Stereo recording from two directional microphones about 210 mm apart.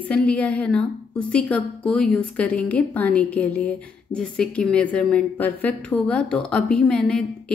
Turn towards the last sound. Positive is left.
turn(degrees=5)  # may be behind; listen again after turning